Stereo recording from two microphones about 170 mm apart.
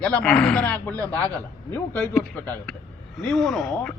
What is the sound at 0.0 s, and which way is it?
Speech, 5° left (ahead or behind).